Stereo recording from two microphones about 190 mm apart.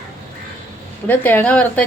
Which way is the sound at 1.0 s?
10° left (ahead or behind).